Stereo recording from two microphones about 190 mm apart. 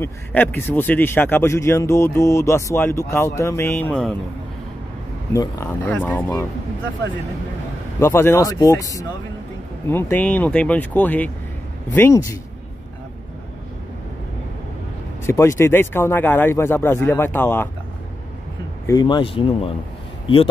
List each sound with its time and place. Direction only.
0.0 s speech: 10° left (ahead or behind)
5.3 s speech: 15° left (ahead or behind)
8.0 s speech: 15° left (ahead or behind)
15.2 s speech: 15° left (ahead or behind)
18.9 s speech: 20° left (ahead or behind)